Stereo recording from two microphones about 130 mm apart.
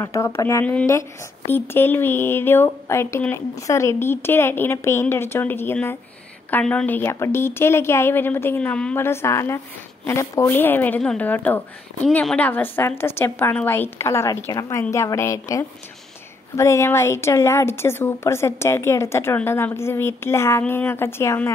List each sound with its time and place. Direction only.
0.0 s a woman's voice: 25° left (ahead or behind)